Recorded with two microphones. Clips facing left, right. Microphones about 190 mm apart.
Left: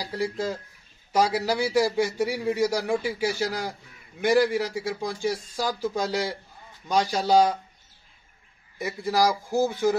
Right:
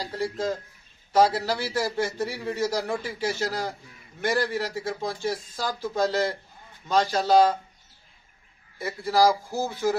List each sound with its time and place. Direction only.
0.2 s a man's voice: 10° left (ahead or behind)
8.7 s a man's voice: 15° left (ahead or behind)